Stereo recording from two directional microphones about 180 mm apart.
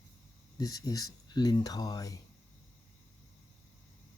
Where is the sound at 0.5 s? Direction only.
20° left (ahead or behind).